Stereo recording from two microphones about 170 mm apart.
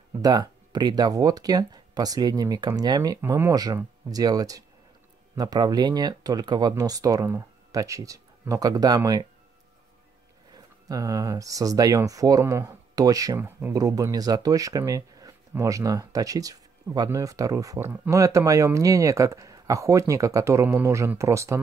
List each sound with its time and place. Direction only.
0.2 s speech: 25° right (ahead or behind)
10.5 s speech: 20° right (ahead or behind)